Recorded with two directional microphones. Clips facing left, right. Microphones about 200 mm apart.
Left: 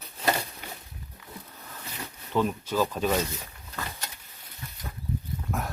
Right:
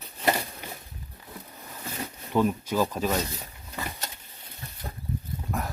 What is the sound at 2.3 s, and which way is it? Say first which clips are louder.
Speech: right 2 dB; 10° right (ahead or behind).